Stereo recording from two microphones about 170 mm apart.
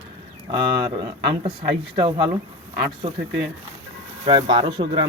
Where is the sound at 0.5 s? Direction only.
25° right (ahead or behind).